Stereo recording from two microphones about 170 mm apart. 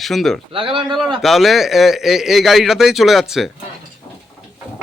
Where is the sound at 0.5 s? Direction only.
30° right (ahead or behind).